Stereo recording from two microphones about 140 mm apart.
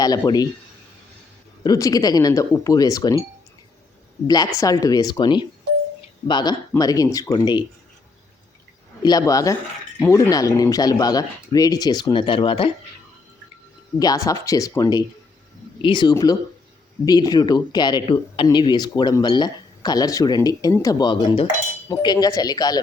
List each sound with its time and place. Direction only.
0.0 s speech: 30° left (ahead or behind)
1.6 s speech: 25° left (ahead or behind)
4.3 s speech: 25° left (ahead or behind)
9.0 s speech: 25° left (ahead or behind)
14.0 s speech: 25° left (ahead or behind)
21.1 s cutlery: 35° left (ahead or behind)
21.8 s speech: 25° left (ahead or behind)